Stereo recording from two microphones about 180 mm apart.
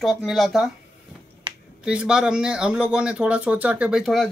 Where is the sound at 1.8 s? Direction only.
5° right (ahead or behind).